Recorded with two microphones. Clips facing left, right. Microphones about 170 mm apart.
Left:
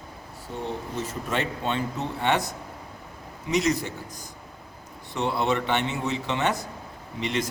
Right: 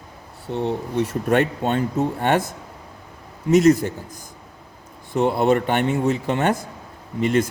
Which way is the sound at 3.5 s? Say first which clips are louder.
Right 10 dB; 50° right (ahead or behind).